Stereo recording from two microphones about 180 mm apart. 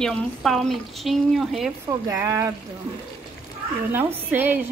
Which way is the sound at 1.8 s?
15° right (ahead or behind).